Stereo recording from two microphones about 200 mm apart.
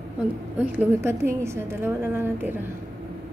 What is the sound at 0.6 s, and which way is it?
A woman's voice, 10° right (ahead or behind).